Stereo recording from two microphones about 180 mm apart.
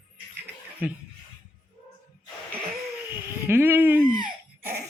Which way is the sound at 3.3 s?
15° right (ahead or behind).